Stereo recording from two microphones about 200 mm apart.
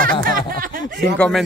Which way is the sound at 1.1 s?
5° left (ahead or behind).